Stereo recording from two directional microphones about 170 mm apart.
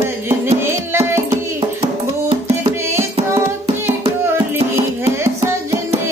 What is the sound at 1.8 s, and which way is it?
Music, 40° right (ahead or behind).